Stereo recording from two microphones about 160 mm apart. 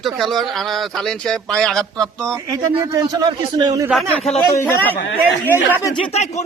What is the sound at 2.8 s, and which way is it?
A man's voice, 25° right (ahead or behind).